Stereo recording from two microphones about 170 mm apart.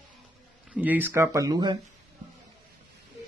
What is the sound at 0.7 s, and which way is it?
Speech, 10° right (ahead or behind).